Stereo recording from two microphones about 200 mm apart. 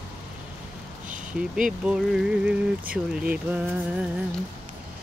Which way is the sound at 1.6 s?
5° right (ahead or behind).